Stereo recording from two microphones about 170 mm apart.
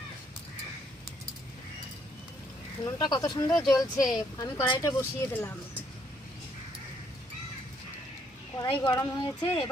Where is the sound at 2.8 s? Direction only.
25° left (ahead or behind).